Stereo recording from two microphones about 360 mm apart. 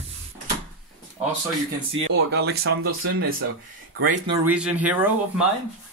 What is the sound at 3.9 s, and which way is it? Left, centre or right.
Speech, right.